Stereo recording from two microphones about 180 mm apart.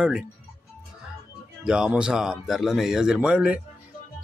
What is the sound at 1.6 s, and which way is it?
Speech, 5° right (ahead or behind).